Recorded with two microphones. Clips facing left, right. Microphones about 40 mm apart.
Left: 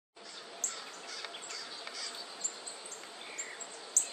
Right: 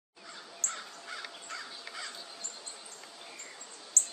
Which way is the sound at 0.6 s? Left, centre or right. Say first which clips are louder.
Right 6 dB; right.